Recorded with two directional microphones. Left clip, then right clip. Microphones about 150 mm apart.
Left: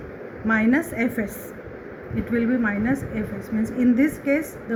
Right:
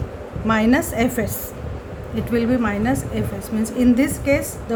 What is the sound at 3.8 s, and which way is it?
Speech, 30° right (ahead or behind).